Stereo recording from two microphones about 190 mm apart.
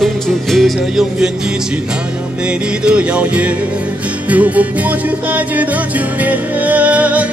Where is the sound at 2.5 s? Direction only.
5° right (ahead or behind).